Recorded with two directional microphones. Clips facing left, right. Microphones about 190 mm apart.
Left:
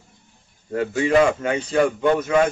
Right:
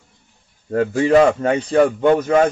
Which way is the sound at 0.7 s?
40° right (ahead or behind).